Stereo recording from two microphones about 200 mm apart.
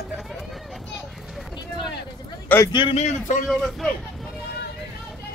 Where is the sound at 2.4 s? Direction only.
10° left (ahead or behind).